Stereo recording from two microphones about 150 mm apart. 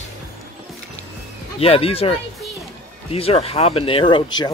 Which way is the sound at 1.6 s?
40° left (ahead or behind).